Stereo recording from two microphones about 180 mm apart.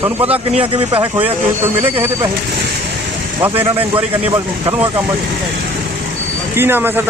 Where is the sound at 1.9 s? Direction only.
10° right (ahead or behind).